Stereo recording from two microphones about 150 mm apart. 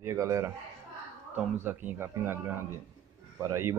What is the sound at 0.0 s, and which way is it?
A man's voice, 20° right (ahead or behind).